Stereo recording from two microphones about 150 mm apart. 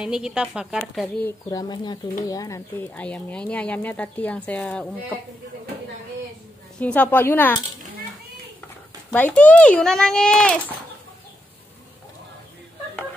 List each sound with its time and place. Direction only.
0.0 s a woman's voice: 5° right (ahead or behind)
1.2 s speech: 25° left (ahead or behind)
2.9 s speech: 10° left (ahead or behind)
6.8 s speech: 10° left (ahead or behind)
9.1 s speech: 10° left (ahead or behind)